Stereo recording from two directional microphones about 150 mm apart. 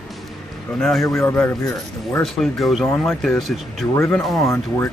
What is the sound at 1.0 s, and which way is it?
Speech, 15° left (ahead or behind).